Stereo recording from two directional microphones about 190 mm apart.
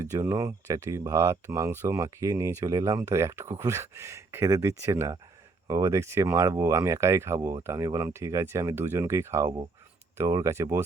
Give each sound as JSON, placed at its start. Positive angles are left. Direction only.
{"t": 0.0, "sound": "speech", "side_deg": -15}